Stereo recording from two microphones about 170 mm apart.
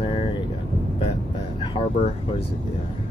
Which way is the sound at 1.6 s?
30° left (ahead or behind).